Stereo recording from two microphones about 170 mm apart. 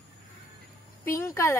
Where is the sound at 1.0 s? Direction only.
15° left (ahead or behind).